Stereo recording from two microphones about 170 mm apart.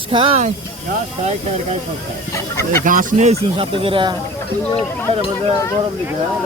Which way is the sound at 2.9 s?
50° right (ahead or behind).